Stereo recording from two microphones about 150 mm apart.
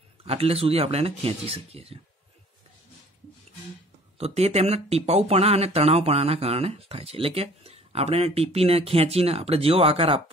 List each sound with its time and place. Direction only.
0.2 s speech: 40° right (ahead or behind)
4.2 s speech: 45° right (ahead or behind)